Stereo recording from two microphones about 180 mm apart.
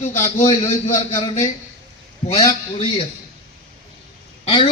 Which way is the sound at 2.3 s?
30° left (ahead or behind).